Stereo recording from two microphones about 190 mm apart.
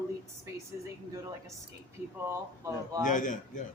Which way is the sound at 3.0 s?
40° left (ahead or behind).